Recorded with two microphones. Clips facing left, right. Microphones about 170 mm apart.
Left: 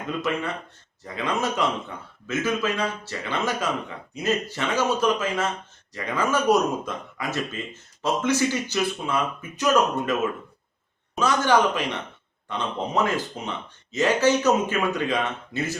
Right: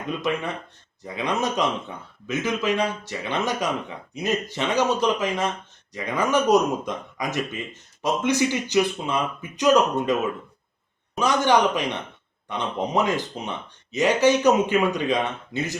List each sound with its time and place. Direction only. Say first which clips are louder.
0.0 s speech: right 1 dB; 15° right (ahead or behind)
11.2 s speech: right 1 dB; 15° right (ahead or behind)